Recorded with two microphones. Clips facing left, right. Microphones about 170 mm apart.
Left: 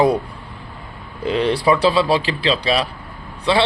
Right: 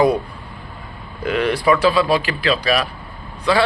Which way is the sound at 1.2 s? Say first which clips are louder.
Left 1 dB; 30° left (ahead or behind).